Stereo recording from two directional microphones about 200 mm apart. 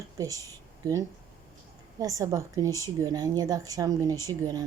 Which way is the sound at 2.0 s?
15° right (ahead or behind).